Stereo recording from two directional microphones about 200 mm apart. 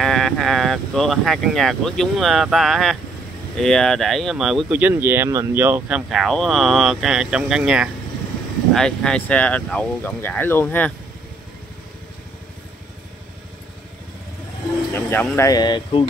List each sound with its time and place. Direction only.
0.0 s speech: centre (ahead or behind)
15.0 s speech: 10° left (ahead or behind)